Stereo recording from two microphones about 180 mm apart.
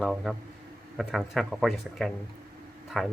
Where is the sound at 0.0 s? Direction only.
Centre (ahead or behind).